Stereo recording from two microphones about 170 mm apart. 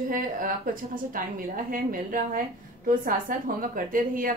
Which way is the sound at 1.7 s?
55° right (ahead or behind).